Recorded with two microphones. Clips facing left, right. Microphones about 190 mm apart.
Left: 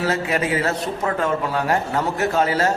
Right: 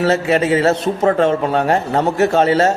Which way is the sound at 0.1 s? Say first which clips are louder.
Right 7 dB; 25° right (ahead or behind).